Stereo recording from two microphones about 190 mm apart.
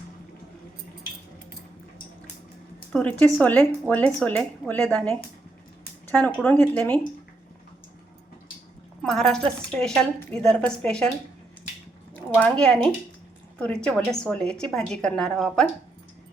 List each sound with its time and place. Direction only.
2.9 s speech: 10° left (ahead or behind)
9.0 s a woman's voice: centre (ahead or behind)
12.1 s a woman's voice: 5° left (ahead or behind)